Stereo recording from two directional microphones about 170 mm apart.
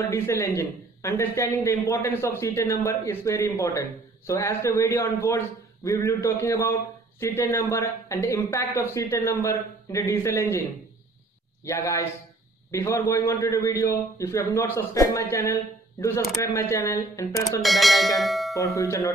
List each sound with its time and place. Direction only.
0.1 s a man's voice: 15° left (ahead or behind)
11.6 s a man's voice: 15° left (ahead or behind)
17.6 s bell: centre (ahead or behind)
18.8 s speech: 20° left (ahead or behind)